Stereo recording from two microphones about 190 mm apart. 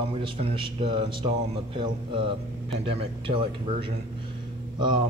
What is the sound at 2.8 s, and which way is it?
Speech, 30° right (ahead or behind).